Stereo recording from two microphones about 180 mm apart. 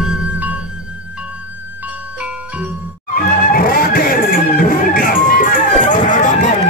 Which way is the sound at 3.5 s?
55° left (ahead or behind).